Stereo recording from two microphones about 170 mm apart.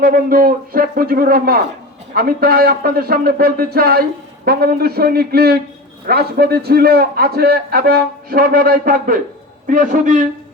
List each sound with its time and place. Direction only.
0.0 s a man's voice: 55° right (ahead or behind)